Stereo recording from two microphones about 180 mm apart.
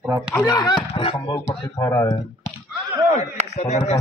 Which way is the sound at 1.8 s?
15° left (ahead or behind).